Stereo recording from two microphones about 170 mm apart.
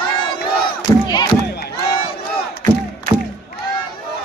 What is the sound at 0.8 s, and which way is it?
Battle cry, 25° left (ahead or behind).